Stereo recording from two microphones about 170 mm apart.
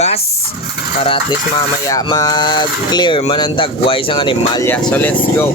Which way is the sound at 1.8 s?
25° left (ahead or behind).